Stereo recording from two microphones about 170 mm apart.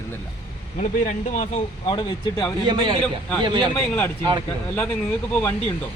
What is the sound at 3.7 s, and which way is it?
Speech, 10° left (ahead or behind).